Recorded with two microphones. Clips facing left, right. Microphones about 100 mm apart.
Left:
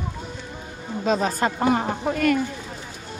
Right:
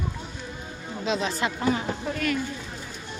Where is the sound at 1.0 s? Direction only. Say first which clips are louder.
Left 5 dB; 45° left (ahead or behind).